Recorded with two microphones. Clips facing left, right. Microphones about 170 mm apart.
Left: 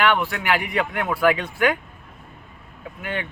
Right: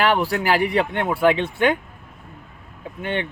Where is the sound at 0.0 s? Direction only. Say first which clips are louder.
Right 2 dB; 35° right (ahead or behind).